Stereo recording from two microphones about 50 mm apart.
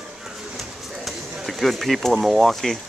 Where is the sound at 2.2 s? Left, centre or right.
Centre.